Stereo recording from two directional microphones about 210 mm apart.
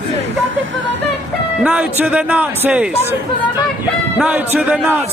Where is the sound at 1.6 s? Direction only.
5° right (ahead or behind).